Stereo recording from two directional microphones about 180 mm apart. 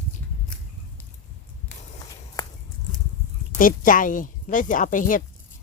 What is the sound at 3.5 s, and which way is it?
A woman's voice, 50° left (ahead or behind).